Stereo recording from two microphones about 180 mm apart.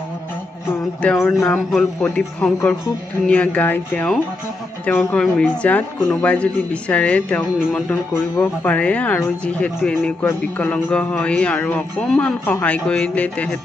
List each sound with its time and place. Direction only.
0.7 s a man's voice: 10° left (ahead or behind)